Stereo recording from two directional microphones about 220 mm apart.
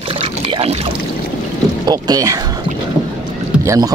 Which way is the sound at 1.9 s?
15° right (ahead or behind).